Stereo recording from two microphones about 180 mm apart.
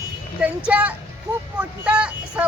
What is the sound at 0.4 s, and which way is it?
Speech, 5° right (ahead or behind).